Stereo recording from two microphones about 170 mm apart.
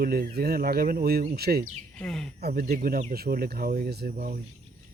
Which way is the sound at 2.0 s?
5° left (ahead or behind).